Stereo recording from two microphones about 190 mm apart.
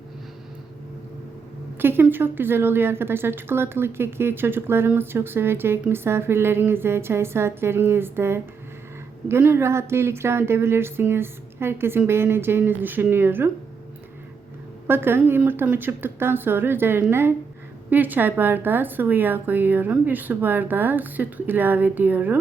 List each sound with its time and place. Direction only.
1.8 s a woman's voice: 10° right (ahead or behind)
14.8 s a woman's voice: 10° right (ahead or behind)